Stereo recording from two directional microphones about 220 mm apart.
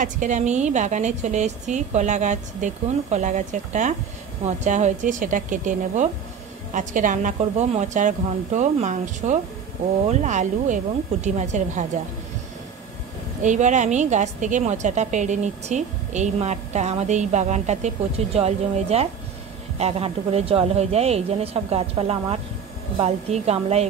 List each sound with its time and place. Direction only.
0.0 s a woman's voice: 35° right (ahead or behind)
13.4 s a woman's voice: 35° right (ahead or behind)